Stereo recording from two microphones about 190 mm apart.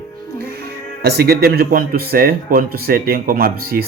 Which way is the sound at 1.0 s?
55° right (ahead or behind).